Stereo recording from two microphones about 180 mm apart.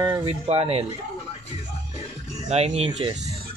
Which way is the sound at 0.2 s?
30° right (ahead or behind).